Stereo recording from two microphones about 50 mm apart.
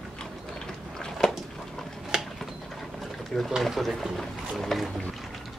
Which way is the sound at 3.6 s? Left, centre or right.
Centre.